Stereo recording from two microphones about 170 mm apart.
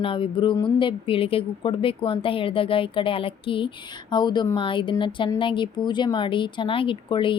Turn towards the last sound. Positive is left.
turn(degrees=30)  # may be behind; listen again after turning